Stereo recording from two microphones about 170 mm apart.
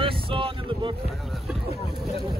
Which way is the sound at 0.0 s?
30° right (ahead or behind).